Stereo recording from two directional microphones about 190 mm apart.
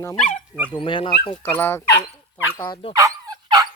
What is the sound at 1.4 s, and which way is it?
Speech, 10° left (ahead or behind).